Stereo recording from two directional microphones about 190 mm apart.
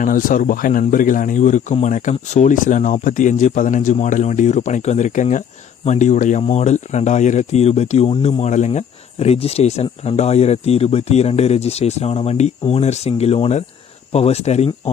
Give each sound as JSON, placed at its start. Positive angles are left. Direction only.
{"t": 0.0, "sound": "speech", "side_deg": 45}